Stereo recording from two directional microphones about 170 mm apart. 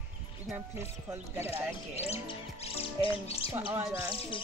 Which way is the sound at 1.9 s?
35° left (ahead or behind).